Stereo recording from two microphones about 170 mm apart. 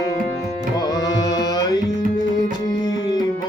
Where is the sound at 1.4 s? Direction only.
25° left (ahead or behind).